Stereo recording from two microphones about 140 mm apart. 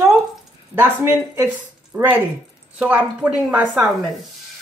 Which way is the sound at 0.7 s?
15° right (ahead or behind).